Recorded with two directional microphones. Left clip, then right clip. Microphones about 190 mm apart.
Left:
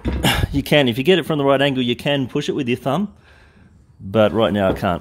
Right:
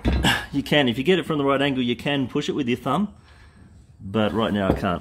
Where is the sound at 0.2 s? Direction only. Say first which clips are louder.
Left 4 dB; 35° left (ahead or behind).